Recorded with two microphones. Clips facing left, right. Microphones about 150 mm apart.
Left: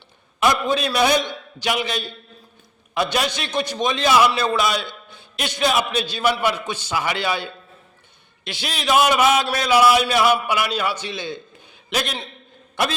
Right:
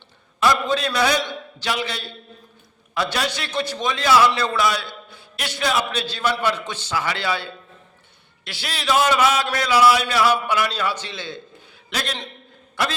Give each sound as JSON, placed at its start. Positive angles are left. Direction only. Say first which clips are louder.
{"t": 0.3, "sound": "a man's voice", "louder": "even", "side_deg": 15}
{"t": 8.4, "sound": "a man's voice", "louder": "left 1 dB", "side_deg": 20}